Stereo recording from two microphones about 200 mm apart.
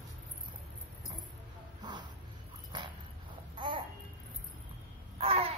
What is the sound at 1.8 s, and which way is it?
Crow, 20° right (ahead or behind).